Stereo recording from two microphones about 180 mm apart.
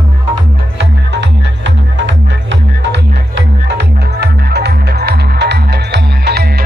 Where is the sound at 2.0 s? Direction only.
80° right.